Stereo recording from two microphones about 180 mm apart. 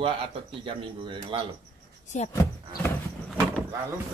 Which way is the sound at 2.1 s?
40° left (ahead or behind).